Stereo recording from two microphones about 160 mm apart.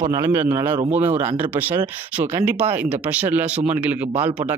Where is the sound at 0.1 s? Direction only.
15° right (ahead or behind).